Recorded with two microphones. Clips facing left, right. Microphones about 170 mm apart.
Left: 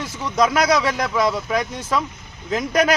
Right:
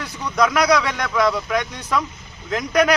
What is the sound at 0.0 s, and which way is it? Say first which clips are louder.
Speech: left 1 dB; 25° left (ahead or behind).